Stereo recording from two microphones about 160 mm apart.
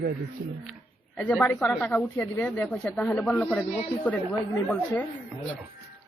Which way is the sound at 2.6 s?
20° left (ahead or behind).